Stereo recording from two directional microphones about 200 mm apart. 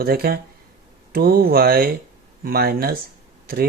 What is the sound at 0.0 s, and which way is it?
Speech, 50° right (ahead or behind).